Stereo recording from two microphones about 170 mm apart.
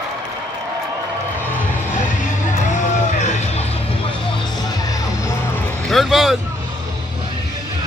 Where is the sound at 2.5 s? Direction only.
45° left (ahead or behind).